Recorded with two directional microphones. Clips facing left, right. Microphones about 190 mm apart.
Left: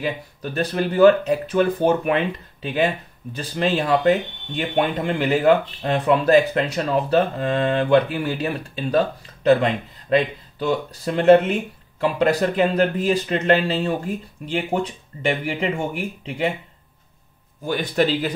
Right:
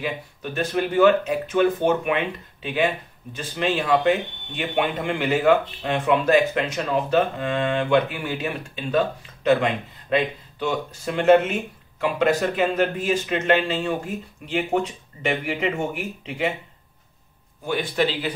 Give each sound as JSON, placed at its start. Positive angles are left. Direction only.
{"t": 0.0, "sound": "a man's voice", "side_deg": 35}
{"t": 17.6, "sound": "a man's voice", "side_deg": 45}